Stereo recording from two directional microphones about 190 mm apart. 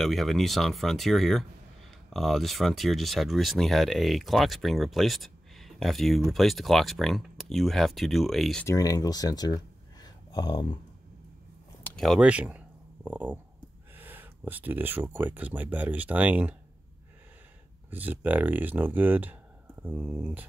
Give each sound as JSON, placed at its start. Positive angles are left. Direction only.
{"t": 0.0, "sound": "speech", "side_deg": 0}
{"t": 8.6, "sound": "speech", "side_deg": 20}
{"t": 10.0, "sound": "a sound", "side_deg": 20}
{"t": 11.8, "sound": "a sound", "side_deg": 5}
{"t": 13.9, "sound": "speech", "side_deg": -10}
{"t": 17.8, "sound": "speech", "side_deg": -10}